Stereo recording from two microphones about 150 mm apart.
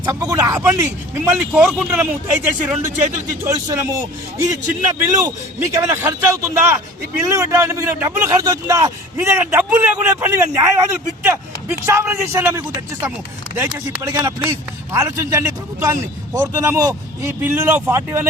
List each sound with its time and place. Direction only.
0.0 s a man's voice: 20° right (ahead or behind)